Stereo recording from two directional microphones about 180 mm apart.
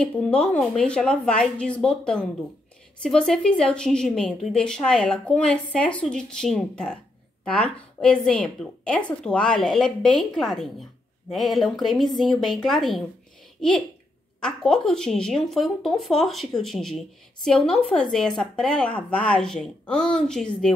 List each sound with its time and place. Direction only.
0.0 s a woman's voice: 5° left (ahead or behind)